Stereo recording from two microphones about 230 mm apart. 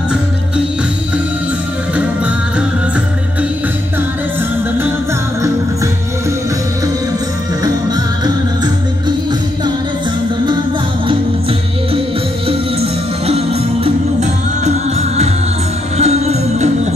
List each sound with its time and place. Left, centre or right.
12.4 s music: right